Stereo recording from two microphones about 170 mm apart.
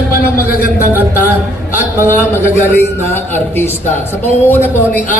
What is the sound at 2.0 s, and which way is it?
A man's voice, 15° left (ahead or behind).